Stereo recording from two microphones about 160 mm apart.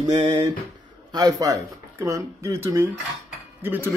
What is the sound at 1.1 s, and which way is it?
Speech, 20° right (ahead or behind).